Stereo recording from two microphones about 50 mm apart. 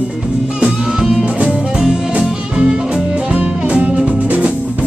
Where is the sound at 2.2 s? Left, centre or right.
Centre; by 4.8 s right.